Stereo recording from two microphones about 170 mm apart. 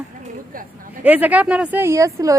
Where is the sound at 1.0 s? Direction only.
10° right (ahead or behind).